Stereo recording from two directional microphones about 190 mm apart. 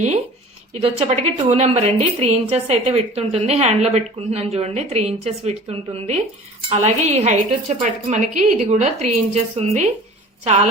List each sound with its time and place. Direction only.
0.7 s a woman's voice: 35° right (ahead or behind)